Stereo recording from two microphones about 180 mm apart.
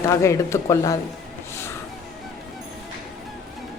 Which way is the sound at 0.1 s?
15° left (ahead or behind).